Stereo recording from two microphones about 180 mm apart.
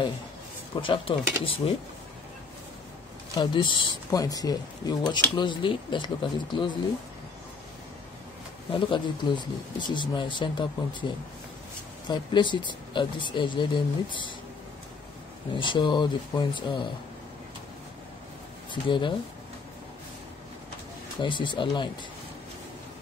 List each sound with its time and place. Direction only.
0.7 s speech: 30° left (ahead or behind)
3.3 s speech: 25° left (ahead or behind)
8.7 s speech: 25° left (ahead or behind)
12.1 s speech: 25° left (ahead or behind)
15.5 s speech: 25° left (ahead or behind)
18.7 s speech: 25° left (ahead or behind)
21.2 s speech: 25° left (ahead or behind)